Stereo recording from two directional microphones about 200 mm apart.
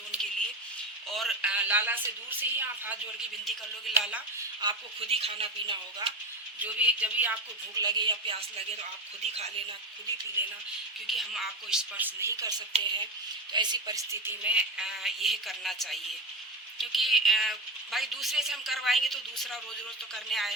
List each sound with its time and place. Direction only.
0.1 s a sound: 5° left (ahead or behind)
1.1 s a woman's voice: centre (ahead or behind)
4.6 s speech: 25° right (ahead or behind)
6.6 s a woman's voice: 5° right (ahead or behind)
7.8 s speech: 20° right (ahead or behind)
11.0 s a woman's voice: centre (ahead or behind)